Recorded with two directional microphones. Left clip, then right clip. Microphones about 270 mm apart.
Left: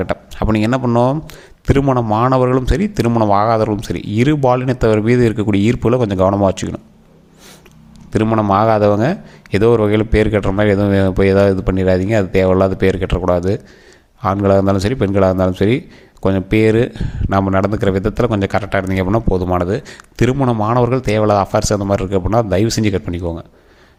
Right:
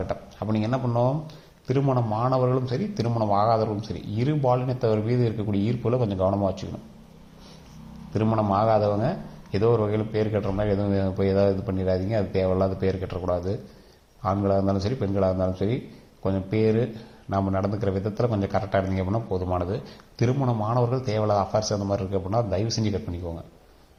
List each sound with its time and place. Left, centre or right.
0.0 s a man's voice: left
8.1 s a man's voice: left